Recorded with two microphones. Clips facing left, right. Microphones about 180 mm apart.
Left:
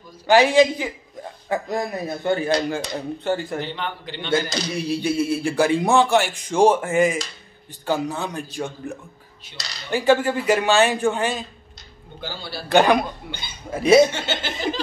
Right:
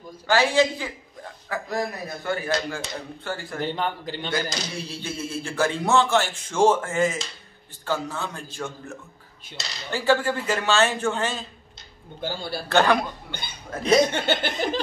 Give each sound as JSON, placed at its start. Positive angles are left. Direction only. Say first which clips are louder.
{"t": 0.3, "sound": "a man's voice", "louder": "left 5 dB", "side_deg": 15}
{"t": 3.6, "sound": "a man's voice", "louder": "right 3 dB", "side_deg": -40}
{"t": 4.7, "sound": "a man's voice", "louder": "left 11 dB", "side_deg": 15}
{"t": 12.2, "sound": "a man's voice", "louder": "right 3 dB", "side_deg": -50}
{"t": 12.6, "sound": "a man's voice", "louder": "left 4 dB", "side_deg": 15}
{"t": 13.3, "sound": "laughter", "louder": "left 1 dB", "side_deg": -55}
{"t": 13.7, "sound": "a man's voice", "louder": "left 5 dB", "side_deg": 10}
{"t": 14.1, "sound": "laughter", "louder": "right 3 dB", "side_deg": -55}